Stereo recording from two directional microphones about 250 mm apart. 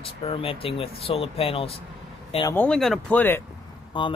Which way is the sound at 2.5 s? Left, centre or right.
Centre.